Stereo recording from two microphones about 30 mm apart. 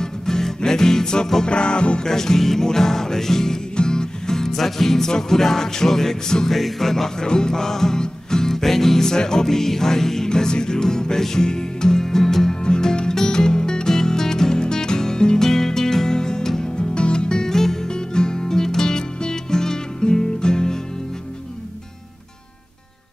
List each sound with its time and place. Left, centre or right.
0.0 s music: centre
1.4 s music: left
2.0 s music: centre
3.7 s music: left
6.5 s music: centre
7.2 s music: left
12.6 s music: left
15.4 s music: centre
16.7 s music: left
17.5 s music: centre
17.8 s music: left